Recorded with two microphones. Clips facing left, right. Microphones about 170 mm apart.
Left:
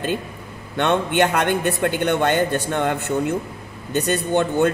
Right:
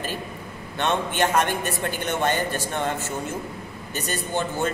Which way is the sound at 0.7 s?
65° left (ahead or behind).